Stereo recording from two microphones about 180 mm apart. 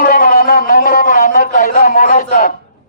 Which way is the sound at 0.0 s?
50° left (ahead or behind).